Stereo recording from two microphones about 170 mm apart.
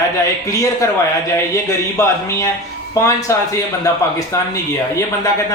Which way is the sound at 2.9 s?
20° left (ahead or behind).